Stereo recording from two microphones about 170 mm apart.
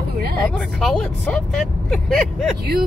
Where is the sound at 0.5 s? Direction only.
5° left (ahead or behind).